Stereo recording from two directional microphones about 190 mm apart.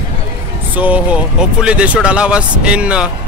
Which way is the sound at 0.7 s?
5° right (ahead or behind).